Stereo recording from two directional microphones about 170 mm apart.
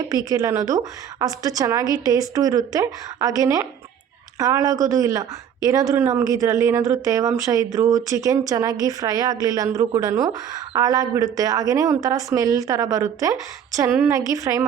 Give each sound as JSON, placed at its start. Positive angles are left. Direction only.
{"t": 0.1, "sound": "a woman's voice", "side_deg": -20}